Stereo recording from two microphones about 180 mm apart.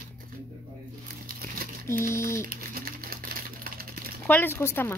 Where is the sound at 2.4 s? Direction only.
55° right (ahead or behind).